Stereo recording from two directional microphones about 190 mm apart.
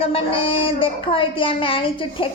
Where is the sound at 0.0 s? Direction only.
30° left (ahead or behind).